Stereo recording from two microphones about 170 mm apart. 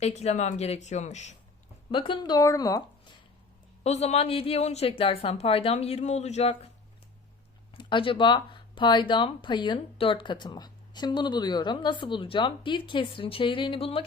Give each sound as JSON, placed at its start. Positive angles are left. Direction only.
{"t": 0.2, "sound": "speech", "side_deg": 40}
{"t": 1.9, "sound": "a woman's voice", "side_deg": 30}
{"t": 3.8, "sound": "a woman's voice", "side_deg": 40}
{"t": 7.8, "sound": "speech", "side_deg": 30}